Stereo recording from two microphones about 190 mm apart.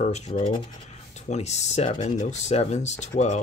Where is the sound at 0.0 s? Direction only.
35° left (ahead or behind).